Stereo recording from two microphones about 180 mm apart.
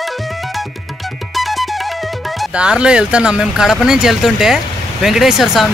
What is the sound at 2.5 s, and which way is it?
Speech, 5° right (ahead or behind).